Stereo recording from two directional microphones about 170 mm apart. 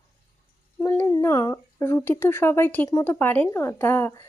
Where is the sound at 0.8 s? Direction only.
15° left (ahead or behind).